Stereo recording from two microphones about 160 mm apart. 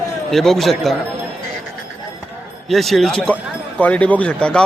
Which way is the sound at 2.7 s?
Centre (ahead or behind).